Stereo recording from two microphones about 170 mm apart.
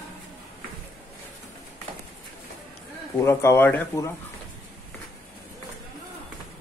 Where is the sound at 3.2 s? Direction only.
15° left (ahead or behind).